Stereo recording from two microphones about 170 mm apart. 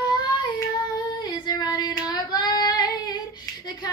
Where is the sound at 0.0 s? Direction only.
25° left (ahead or behind).